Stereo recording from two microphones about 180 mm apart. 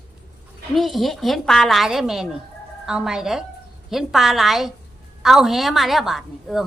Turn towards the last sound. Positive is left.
turn(degrees=0)  # may be behind; listen again after turning